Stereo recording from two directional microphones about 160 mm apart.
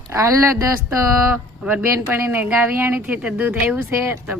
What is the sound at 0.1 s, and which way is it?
Speech, 20° right (ahead or behind).